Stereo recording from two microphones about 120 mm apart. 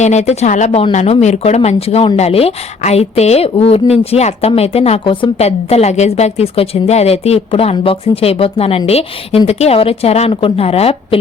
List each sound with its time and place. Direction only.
0.0 s a woman's voice: 70° left (ahead or behind); by 5.3 s 50° left (ahead or behind)
5.4 s a woman's voice: 60° left (ahead or behind)